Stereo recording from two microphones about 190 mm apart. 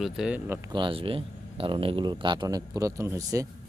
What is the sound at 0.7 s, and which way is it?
Speech, 25° right (ahead or behind).